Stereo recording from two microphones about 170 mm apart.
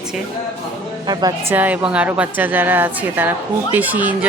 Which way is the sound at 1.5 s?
10° right (ahead or behind).